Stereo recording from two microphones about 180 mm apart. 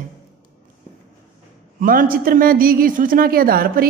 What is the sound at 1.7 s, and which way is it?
A woman's voice, 50° right (ahead or behind).